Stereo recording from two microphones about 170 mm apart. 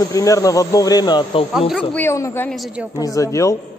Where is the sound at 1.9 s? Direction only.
15° left (ahead or behind).